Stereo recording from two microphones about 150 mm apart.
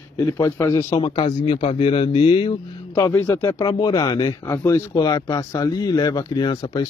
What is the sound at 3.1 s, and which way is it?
Speech, 15° left (ahead or behind).